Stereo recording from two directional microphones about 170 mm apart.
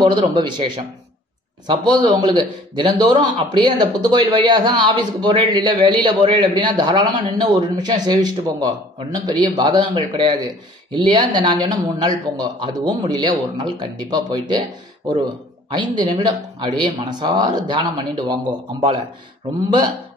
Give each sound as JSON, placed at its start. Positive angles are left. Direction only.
{"t": 0.0, "sound": "speech", "side_deg": -25}
{"t": 15.7, "sound": "speech", "side_deg": -25}